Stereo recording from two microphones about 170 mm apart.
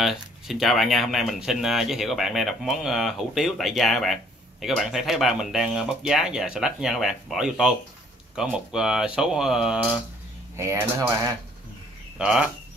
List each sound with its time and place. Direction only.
0.0 s speech: centre (ahead or behind)
10.5 s speech: 15° right (ahead or behind)
12.2 s speech: 5° right (ahead or behind)